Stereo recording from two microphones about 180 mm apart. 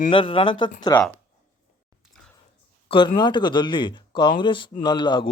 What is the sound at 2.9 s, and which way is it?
A man's voice, 25° left (ahead or behind).